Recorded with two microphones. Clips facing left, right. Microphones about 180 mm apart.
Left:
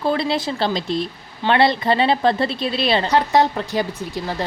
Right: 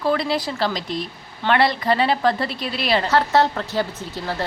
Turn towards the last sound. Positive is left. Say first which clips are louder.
# left 1 dB
turn(degrees=15)  # may be behind; listen again after turning